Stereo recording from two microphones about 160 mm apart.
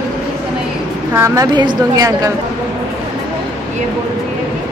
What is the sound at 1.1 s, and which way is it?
A woman's voice, 15° right (ahead or behind).